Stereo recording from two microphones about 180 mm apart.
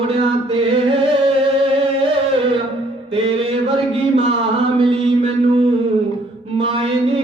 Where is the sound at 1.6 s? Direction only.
30° right (ahead or behind).